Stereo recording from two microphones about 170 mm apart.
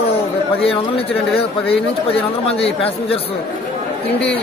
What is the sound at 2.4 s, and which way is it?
Speech, 35° left (ahead or behind).